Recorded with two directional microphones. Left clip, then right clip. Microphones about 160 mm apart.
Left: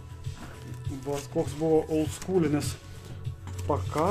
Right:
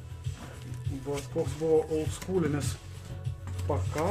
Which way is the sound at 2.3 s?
35° left (ahead or behind).